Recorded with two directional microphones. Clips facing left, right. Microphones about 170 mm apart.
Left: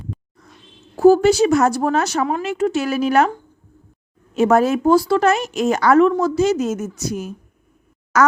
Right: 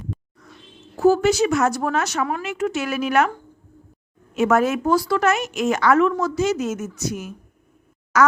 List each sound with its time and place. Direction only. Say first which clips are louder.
0.9 s a woman's voice: left 5 dB; 30° left (ahead or behind)
4.4 s a woman's voice: left 3 dB; 30° left (ahead or behind)